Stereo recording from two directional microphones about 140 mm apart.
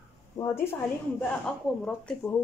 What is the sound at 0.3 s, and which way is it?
Speech, 55° left (ahead or behind).